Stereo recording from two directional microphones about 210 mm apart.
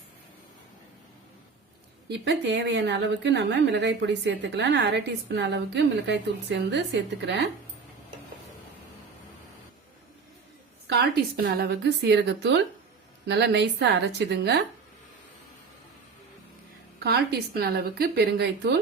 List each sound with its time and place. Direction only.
2.0 s speech: 55° right (ahead or behind)
11.1 s a woman's voice: 50° right (ahead or behind)
17.0 s a woman's voice: 50° right (ahead or behind)